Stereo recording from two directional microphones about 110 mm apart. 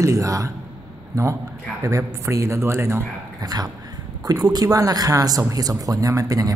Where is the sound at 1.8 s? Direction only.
25° right (ahead or behind).